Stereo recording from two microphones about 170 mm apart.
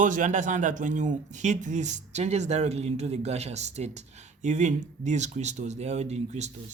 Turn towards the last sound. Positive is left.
turn(degrees=-40)  # may be behind; listen again after turning